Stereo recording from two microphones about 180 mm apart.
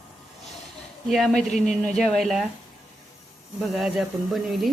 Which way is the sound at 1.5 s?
40° left (ahead or behind).